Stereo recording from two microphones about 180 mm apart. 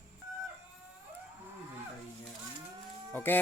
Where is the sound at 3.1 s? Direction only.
10° left (ahead or behind).